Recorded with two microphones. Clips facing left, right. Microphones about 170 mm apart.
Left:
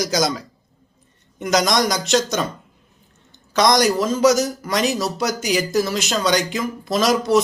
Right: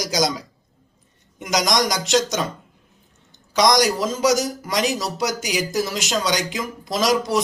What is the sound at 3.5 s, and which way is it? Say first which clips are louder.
A man's voice: left 1 dB; 15° right (ahead or behind).